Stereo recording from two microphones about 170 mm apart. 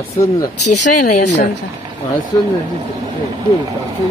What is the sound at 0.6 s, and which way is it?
Speech, 45° left (ahead or behind).